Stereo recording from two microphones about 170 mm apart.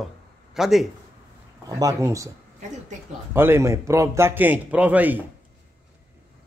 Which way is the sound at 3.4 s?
15° right (ahead or behind).